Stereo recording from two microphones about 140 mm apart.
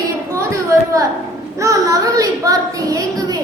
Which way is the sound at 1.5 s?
20° right (ahead or behind).